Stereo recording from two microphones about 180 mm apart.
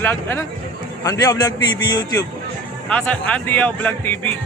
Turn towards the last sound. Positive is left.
turn(degrees=10)  # may be behind; listen again after turning